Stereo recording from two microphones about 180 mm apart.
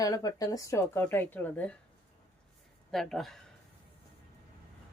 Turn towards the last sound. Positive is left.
turn(degrees=0)  # may be behind; listen again after turning